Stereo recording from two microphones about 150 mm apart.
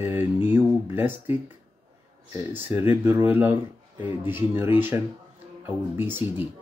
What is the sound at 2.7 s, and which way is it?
Speech, 15° right (ahead or behind).